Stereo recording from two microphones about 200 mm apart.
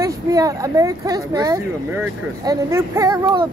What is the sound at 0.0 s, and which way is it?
Speech, 15° right (ahead or behind).